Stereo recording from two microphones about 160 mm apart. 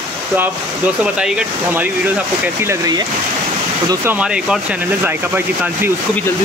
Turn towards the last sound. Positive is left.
turn(degrees=-15)  # may be behind; listen again after turning